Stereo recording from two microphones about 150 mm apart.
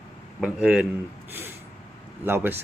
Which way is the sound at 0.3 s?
5° right (ahead or behind).